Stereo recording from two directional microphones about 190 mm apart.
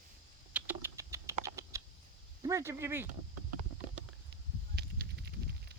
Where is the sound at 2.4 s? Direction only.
15° right (ahead or behind).